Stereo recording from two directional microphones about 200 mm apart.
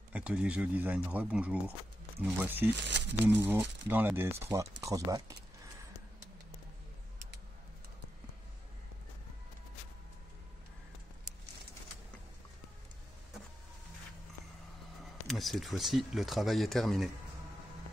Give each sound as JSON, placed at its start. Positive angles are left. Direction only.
{"t": 0.1, "sound": "speech", "side_deg": -5}
{"t": 2.7, "sound": "speech", "side_deg": -60}
{"t": 3.3, "sound": "speech", "side_deg": -10}
{"t": 15.2, "sound": "speech", "side_deg": 0}